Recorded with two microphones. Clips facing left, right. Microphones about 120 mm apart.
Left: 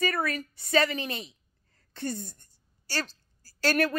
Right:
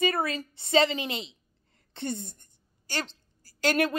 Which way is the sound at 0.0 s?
25° right (ahead or behind).